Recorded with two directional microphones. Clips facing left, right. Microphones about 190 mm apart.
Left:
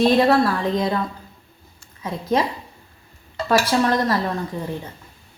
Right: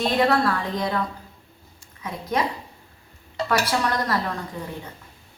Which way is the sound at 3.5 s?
25° left (ahead or behind).